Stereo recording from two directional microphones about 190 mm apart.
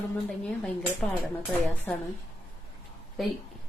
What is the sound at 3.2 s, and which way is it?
Speech, centre (ahead or behind).